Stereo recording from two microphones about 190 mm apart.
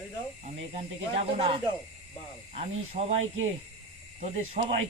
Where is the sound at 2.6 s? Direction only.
35° right (ahead or behind).